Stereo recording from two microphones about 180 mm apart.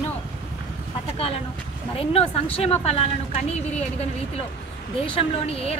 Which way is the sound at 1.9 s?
30° left (ahead or behind).